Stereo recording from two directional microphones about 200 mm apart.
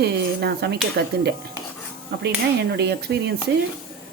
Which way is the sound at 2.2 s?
55° right (ahead or behind).